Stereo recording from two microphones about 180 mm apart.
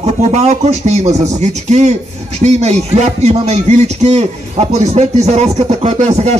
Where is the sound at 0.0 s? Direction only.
35° right (ahead or behind).